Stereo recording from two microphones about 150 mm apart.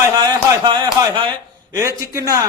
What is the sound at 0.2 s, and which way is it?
Speech, 30° right (ahead or behind).